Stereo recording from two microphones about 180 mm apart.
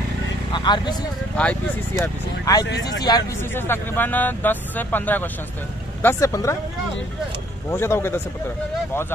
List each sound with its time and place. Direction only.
0.5 s vehicle: 25° left (ahead or behind)
1.3 s speech: 5° left (ahead or behind)
2.5 s speech: 20° left (ahead or behind)
7.7 s speech: 15° left (ahead or behind)